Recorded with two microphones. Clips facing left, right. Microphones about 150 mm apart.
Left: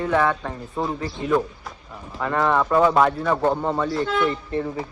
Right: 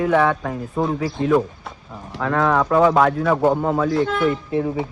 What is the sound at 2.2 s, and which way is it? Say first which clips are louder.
Speech: right 2 dB; centre (ahead or behind).